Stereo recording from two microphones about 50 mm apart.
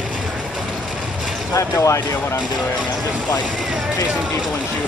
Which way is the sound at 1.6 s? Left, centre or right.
Left.